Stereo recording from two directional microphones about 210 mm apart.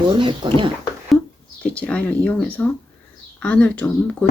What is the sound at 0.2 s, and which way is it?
Speech, 25° right (ahead or behind).